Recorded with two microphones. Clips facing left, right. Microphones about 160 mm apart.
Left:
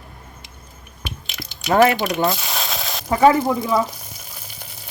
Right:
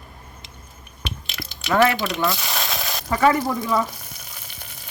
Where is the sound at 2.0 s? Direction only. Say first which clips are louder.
Left 3 dB; 40° left (ahead or behind).